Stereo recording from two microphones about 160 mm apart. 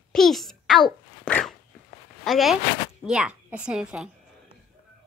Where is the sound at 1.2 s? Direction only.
5° left (ahead or behind).